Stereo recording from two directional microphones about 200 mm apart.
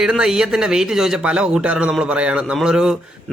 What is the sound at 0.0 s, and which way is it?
A man's voice, 5° right (ahead or behind).